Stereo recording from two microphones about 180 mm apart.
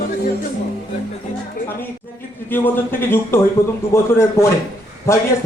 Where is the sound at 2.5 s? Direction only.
10° left (ahead or behind).